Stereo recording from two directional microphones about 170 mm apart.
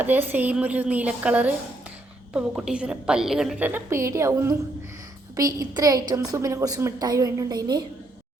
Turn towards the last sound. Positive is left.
turn(degrees=-25)  # may be behind; listen again after turning